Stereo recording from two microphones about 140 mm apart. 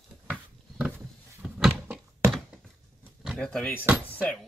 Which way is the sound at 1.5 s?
5° right (ahead or behind).